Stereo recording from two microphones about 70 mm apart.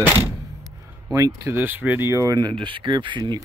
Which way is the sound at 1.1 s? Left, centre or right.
Right.